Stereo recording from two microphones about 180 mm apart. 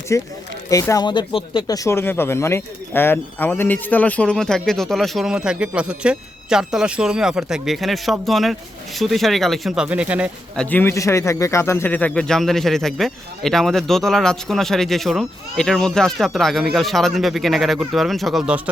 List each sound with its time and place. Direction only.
0.1 s speech: 15° left (ahead or behind); by 10.2 s 5° right (ahead or behind)
10.6 s speech: 10° left (ahead or behind); by 18.7 s 5° right (ahead or behind)